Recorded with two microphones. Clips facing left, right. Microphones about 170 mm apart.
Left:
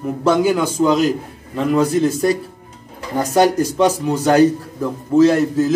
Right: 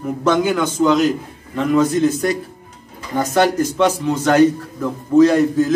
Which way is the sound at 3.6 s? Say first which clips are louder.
Left 1 dB; 35° left (ahead or behind).